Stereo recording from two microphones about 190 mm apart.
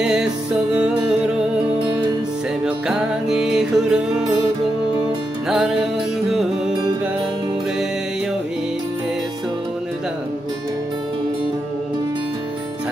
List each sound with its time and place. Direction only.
0.0 s music: 5° right (ahead or behind)
2.6 s music: 5° right (ahead or behind)
6.3 s music: centre (ahead or behind)